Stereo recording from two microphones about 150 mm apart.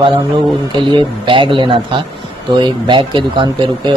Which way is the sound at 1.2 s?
35° right (ahead or behind).